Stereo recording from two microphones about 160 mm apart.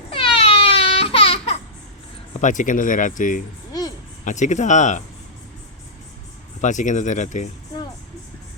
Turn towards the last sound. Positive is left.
turn(degrees=50)  # may be behind; listen again after turning